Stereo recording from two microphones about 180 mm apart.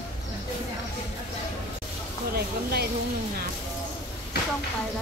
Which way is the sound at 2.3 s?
60° right (ahead or behind).